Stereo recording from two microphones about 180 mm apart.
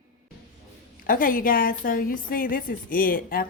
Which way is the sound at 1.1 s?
50° left (ahead or behind).